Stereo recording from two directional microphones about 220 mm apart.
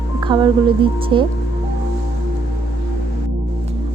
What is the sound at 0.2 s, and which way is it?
Speech, 20° right (ahead or behind).